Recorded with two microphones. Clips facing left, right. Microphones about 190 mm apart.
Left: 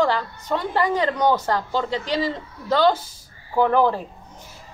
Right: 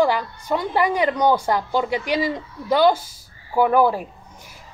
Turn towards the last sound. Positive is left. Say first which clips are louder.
# right 1 dB
turn(degrees=-10)  # may be behind; listen again after turning